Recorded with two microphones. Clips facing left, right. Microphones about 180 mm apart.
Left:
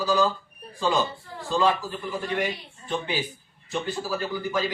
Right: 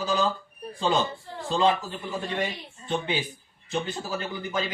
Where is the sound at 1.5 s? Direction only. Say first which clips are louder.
Even; 20° right (ahead or behind).